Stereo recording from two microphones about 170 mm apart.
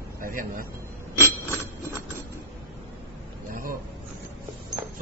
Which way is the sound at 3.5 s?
55° right (ahead or behind).